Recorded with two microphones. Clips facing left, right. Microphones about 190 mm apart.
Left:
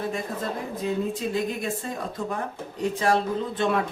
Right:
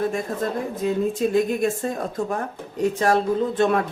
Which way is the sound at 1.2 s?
50° right (ahead or behind).